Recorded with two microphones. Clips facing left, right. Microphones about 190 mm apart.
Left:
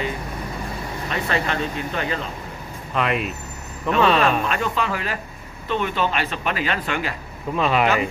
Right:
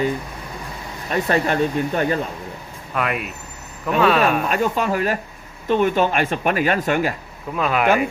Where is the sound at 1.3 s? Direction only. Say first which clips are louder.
Right 6 dB; 45° right (ahead or behind).